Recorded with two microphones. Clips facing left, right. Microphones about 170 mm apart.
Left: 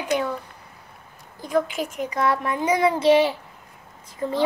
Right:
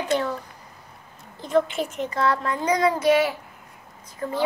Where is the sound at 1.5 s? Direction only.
10° left (ahead or behind).